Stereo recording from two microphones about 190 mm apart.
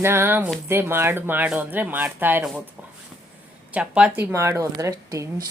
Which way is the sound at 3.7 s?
5° right (ahead or behind).